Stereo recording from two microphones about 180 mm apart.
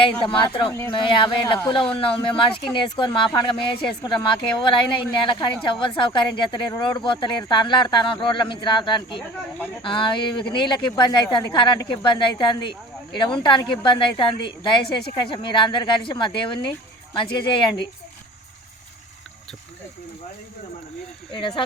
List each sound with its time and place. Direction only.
0.2 s speech: 25° left (ahead or behind)
21.3 s speech: 30° left (ahead or behind)